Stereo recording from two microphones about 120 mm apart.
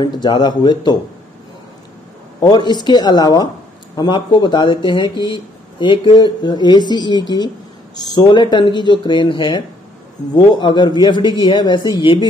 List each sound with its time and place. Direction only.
0.0 s speech: 40° left (ahead or behind)
2.4 s speech: 35° left (ahead or behind)